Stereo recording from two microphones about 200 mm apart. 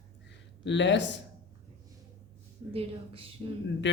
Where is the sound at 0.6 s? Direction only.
65° left (ahead or behind).